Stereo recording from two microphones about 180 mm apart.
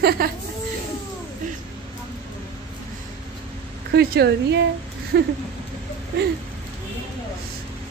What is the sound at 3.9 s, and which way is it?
Speech, 65° right (ahead or behind).